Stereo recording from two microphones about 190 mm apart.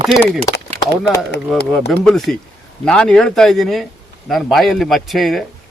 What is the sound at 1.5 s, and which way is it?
Speech, 5° left (ahead or behind).